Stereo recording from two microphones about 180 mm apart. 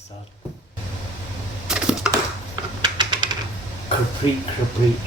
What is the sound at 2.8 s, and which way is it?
Typewriter, 25° right (ahead or behind).